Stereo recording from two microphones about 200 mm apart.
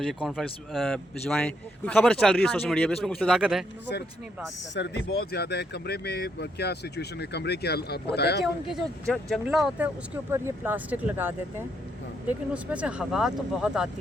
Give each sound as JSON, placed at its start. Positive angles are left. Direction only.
{"t": 0.1, "sound": "a man's voice", "side_deg": 0}
{"t": 4.7, "sound": "speech", "side_deg": 60}
{"t": 8.6, "sound": "a man's voice", "side_deg": 0}
{"t": 12.7, "sound": "a man's voice", "side_deg": -5}